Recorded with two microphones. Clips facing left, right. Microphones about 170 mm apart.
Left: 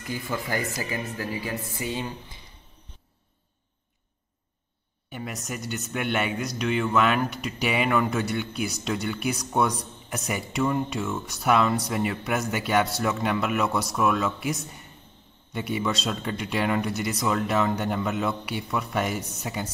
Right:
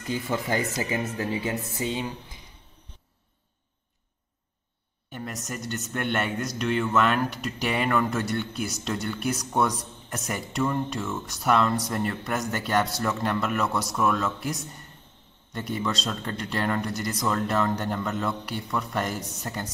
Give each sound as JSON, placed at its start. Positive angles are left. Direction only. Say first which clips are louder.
{"t": 0.0, "sound": "speech", "louder": "right 3 dB", "side_deg": -20}
{"t": 5.1, "sound": "speech", "louder": "left 1 dB", "side_deg": 5}